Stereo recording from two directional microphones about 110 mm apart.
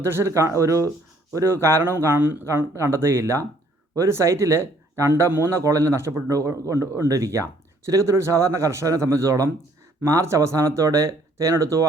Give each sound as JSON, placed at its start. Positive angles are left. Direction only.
{"t": 0.0, "sound": "speech", "side_deg": -25}